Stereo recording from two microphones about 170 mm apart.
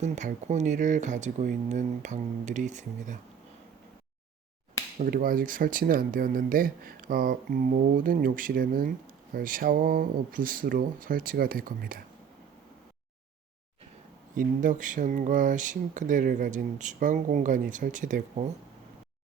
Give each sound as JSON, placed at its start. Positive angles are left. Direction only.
{"t": 0.0, "sound": "speech", "side_deg": -45}
{"t": 4.9, "sound": "speech", "side_deg": -55}
{"t": 14.3, "sound": "speech", "side_deg": -50}